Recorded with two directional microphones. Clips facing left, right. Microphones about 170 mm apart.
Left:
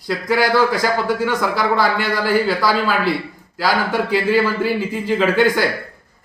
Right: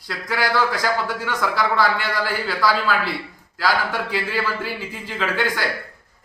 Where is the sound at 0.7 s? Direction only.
10° left (ahead or behind).